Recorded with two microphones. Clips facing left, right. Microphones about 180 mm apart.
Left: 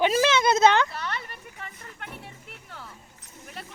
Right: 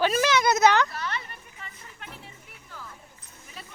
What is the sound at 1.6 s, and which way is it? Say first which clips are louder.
Music: left 4 dB; 60° left (ahead or behind).